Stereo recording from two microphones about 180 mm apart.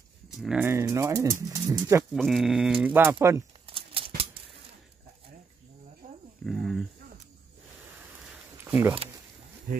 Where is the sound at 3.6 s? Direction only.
30° right (ahead or behind).